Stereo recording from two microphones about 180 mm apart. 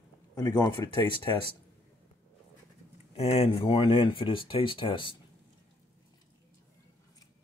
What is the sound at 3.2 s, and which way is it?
Speech, 35° left (ahead or behind).